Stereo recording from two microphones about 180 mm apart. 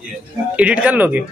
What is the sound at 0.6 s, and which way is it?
Speech, 5° right (ahead or behind).